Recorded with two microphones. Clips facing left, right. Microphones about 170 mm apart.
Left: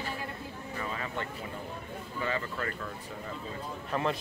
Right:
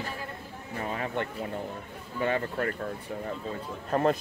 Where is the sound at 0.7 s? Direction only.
50° right (ahead or behind).